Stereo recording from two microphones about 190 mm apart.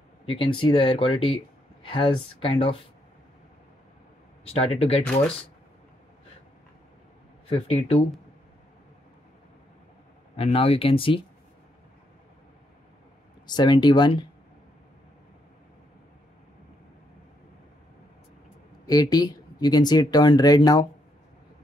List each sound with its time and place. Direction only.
0.3 s speech: 25° left (ahead or behind)
4.5 s speech: 30° left (ahead or behind)
7.4 s speech: 30° left (ahead or behind)
10.3 s speech: 30° left (ahead or behind)
13.5 s speech: 25° left (ahead or behind)
18.9 s speech: 20° left (ahead or behind)